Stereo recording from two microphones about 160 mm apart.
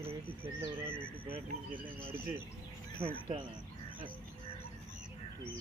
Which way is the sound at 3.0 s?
35° right (ahead or behind).